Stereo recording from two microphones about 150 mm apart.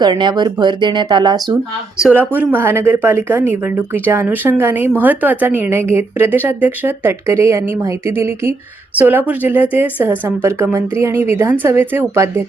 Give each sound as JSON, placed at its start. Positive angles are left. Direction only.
{"t": 0.0, "sound": "speech", "side_deg": -30}
{"t": 2.0, "sound": "speech", "side_deg": -10}